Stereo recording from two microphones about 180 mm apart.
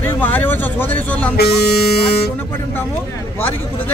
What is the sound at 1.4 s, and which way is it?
Music, 65° left (ahead or behind).